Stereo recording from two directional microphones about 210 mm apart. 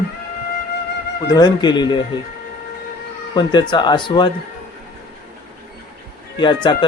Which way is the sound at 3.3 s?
20° left (ahead or behind).